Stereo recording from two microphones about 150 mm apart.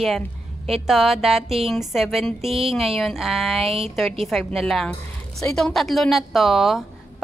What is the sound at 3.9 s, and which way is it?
A woman's voice, centre (ahead or behind).